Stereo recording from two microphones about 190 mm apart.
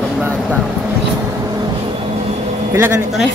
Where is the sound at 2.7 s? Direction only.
15° right (ahead or behind).